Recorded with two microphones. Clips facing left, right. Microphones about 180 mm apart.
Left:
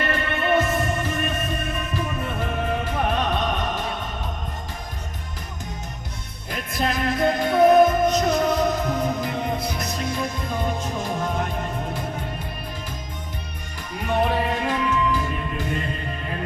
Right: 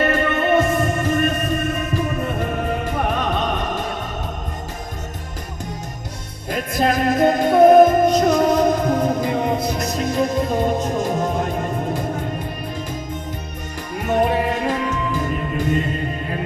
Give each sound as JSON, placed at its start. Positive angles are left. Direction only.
{"t": 0.0, "sound": "music", "side_deg": -45}
{"t": 6.5, "sound": "music", "side_deg": -45}
{"t": 14.0, "sound": "music", "side_deg": -45}